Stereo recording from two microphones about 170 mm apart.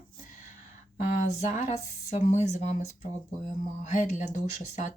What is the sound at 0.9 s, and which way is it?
Speech, 50° left (ahead or behind).